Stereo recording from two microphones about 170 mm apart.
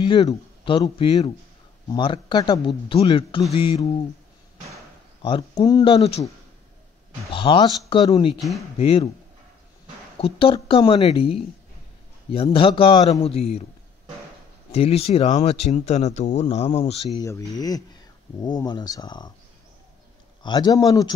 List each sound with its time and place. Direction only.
0.0 s a man's voice: 30° left (ahead or behind)
5.2 s a man's voice: 30° left (ahead or behind)
7.2 s speech: 30° left (ahead or behind)
8.4 s speech: centre (ahead or behind)
8.7 s speech: 35° left (ahead or behind)
10.1 s speech: 35° left (ahead or behind)
13.2 s speech: 35° left (ahead or behind)
14.7 s speech: 35° left (ahead or behind)
17.2 s a man's voice: 20° left (ahead or behind)
20.4 s a man's voice: 25° left (ahead or behind)